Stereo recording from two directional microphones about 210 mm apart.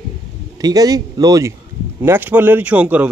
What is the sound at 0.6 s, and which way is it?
Speech, 15° right (ahead or behind).